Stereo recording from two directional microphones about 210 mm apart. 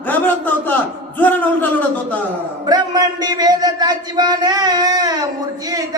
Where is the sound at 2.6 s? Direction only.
20° right (ahead or behind).